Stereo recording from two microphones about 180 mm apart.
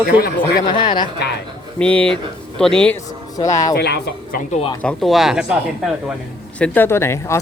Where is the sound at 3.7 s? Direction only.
65° left (ahead or behind).